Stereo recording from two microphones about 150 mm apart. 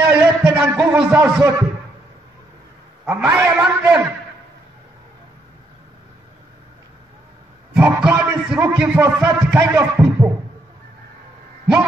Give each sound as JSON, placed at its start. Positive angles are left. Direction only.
{"t": 0.0, "sound": "a sound", "side_deg": -15}
{"t": 3.1, "sound": "a man's voice", "side_deg": -15}
{"t": 7.7, "sound": "a man's voice", "side_deg": -10}